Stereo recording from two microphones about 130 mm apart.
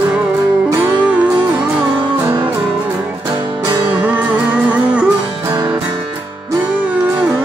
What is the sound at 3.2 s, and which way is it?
Music, 35° right (ahead or behind).